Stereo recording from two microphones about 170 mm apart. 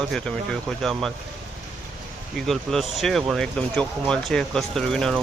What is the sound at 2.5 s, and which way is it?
Speech, centre (ahead or behind).